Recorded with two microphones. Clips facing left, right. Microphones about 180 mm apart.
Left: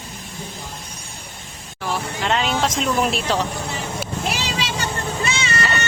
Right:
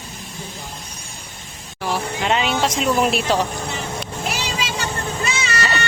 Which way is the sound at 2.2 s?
5° right (ahead or behind).